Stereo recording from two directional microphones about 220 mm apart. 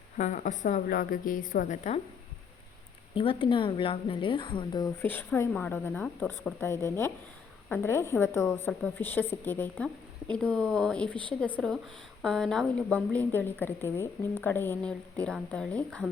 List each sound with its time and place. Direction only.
0.2 s a woman's voice: 35° left (ahead or behind)
3.2 s a woman's voice: 25° left (ahead or behind)
5.0 s a woman's voice: 10° left (ahead or behind)